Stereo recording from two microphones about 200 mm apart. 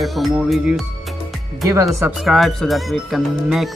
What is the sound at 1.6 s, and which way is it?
Speech, 15° right (ahead or behind).